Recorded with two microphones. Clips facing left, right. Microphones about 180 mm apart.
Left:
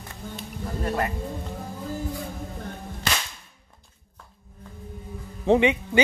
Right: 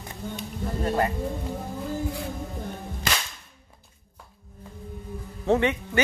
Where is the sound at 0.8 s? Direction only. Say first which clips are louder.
Right 2 dB; 25° right (ahead or behind).